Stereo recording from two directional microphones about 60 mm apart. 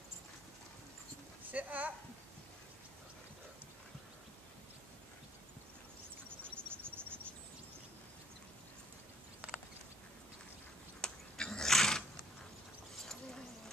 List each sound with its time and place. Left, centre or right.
1.4 s speech: right
6.2 s cricket: right
11.0 s a sound: centre